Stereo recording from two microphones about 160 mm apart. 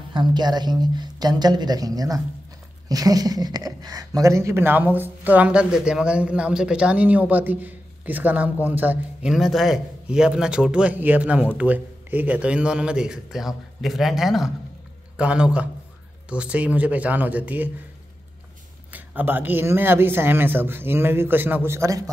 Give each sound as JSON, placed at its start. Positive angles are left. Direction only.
{"t": 0.1, "sound": "a woman's voice", "side_deg": -30}
{"t": 18.9, "sound": "speech", "side_deg": -10}